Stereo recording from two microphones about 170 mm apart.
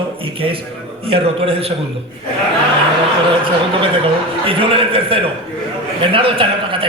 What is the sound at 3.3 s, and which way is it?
A man's voice, 30° right (ahead or behind).